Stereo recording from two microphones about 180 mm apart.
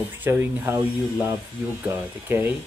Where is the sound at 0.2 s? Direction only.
10° right (ahead or behind).